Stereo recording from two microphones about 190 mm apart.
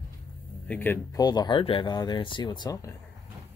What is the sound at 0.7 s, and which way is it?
Speech, 10° left (ahead or behind).